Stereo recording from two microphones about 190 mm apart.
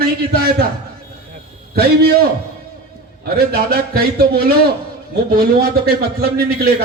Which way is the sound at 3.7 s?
55° right (ahead or behind).